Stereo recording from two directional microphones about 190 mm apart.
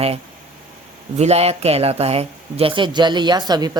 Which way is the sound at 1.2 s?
35° right (ahead or behind).